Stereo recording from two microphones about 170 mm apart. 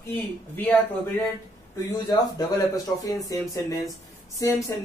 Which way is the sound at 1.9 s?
20° left (ahead or behind).